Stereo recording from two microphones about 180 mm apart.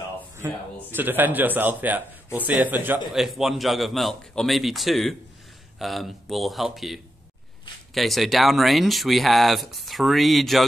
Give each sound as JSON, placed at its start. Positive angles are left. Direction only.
{"t": 0.4, "sound": "a man's voice", "side_deg": -15}